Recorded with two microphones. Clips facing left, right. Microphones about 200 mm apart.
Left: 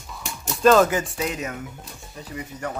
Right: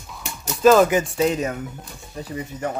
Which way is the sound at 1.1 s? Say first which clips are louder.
Right 7 dB; 30° right (ahead or behind).